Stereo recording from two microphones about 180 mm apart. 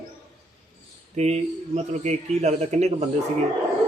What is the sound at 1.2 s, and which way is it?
Speech, 35° right (ahead or behind).